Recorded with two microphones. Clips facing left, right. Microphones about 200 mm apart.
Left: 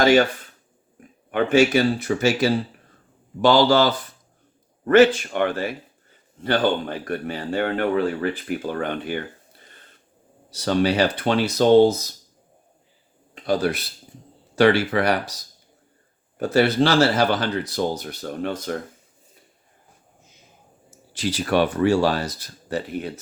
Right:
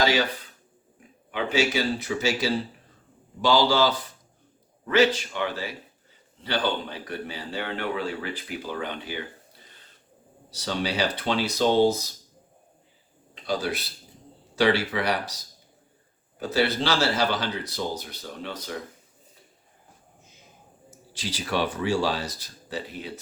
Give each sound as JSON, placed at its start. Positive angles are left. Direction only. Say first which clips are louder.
{"t": 0.0, "sound": "a man's voice", "louder": "left 7 dB", "side_deg": 50}
{"t": 10.5, "sound": "a man's voice", "louder": "left 8 dB", "side_deg": 55}
{"t": 13.3, "sound": "a man's voice", "louder": "left 6 dB", "side_deg": 50}
{"t": 16.4, "sound": "a man's voice", "louder": "left 7 dB", "side_deg": 50}
{"t": 21.1, "sound": "a man's voice", "louder": "left 7 dB", "side_deg": 55}